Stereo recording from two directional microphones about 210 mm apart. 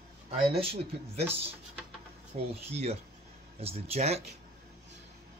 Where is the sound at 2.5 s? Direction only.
30° right (ahead or behind).